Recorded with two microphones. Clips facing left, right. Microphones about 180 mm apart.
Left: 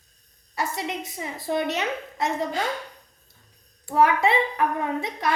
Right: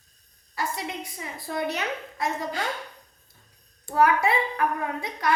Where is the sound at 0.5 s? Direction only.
25° left (ahead or behind).